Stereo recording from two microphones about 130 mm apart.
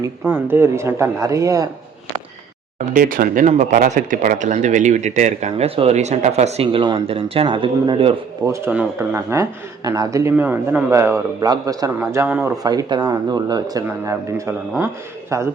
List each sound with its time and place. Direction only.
0.3 s a man's voice: 15° right (ahead or behind)
2.7 s speech: 80° right; by 6.8 s 55° right (ahead or behind)
6.8 s speech: 40° right (ahead or behind)
8.4 s a man's voice: 25° right (ahead or behind)
8.7 s speech: 10° right (ahead or behind)
9.1 s a man's voice: 25° right (ahead or behind)
11.9 s speech: 15° right (ahead or behind)
12.6 s a man's voice: 30° right (ahead or behind)